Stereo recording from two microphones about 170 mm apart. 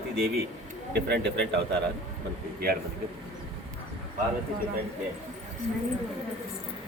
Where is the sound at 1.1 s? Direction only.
90° right.